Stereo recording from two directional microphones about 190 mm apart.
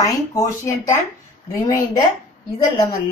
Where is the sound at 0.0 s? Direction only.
15° left (ahead or behind).